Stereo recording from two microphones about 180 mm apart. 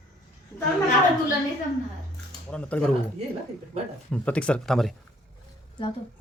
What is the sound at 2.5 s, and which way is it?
Speech, 5° left (ahead or behind).